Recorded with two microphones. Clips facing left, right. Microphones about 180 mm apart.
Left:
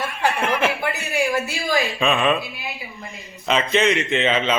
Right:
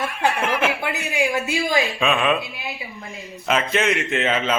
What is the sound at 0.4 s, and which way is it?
Chuckle, 5° right (ahead or behind).